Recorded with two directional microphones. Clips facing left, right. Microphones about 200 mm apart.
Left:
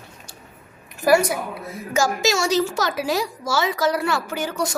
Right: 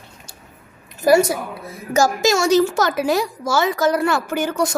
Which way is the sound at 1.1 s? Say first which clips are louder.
Right 3 dB; 25° right (ahead or behind).